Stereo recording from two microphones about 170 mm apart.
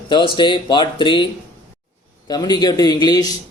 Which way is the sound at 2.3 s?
25° left (ahead or behind).